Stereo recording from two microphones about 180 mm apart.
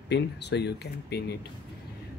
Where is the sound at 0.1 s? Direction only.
70° left (ahead or behind).